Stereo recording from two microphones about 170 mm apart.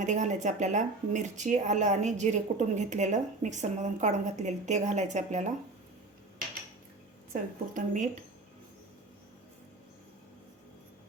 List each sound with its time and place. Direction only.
0.0 s speech: 45° right (ahead or behind)
7.7 s speech: 45° right (ahead or behind)